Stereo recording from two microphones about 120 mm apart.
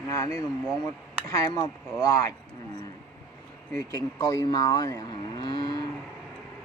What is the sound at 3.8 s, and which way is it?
Speech, 30° left (ahead or behind).